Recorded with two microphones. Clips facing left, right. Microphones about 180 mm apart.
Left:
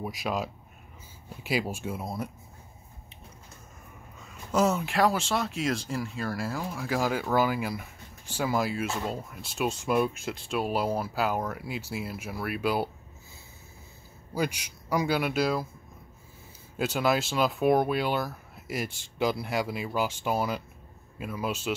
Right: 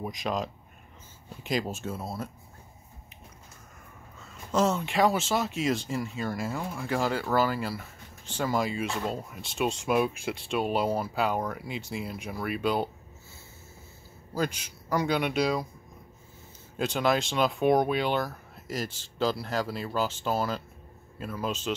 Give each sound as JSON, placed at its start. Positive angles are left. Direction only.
{"t": 0.0, "sound": "speech", "side_deg": 5}
{"t": 4.2, "sound": "speech", "side_deg": 10}
{"t": 14.3, "sound": "speech", "side_deg": 10}
{"t": 16.7, "sound": "speech", "side_deg": 5}